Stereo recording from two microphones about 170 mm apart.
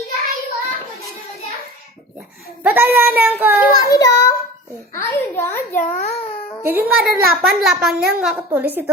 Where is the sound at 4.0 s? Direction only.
20° left (ahead or behind).